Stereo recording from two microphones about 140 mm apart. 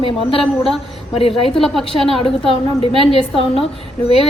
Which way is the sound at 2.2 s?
40° left (ahead or behind).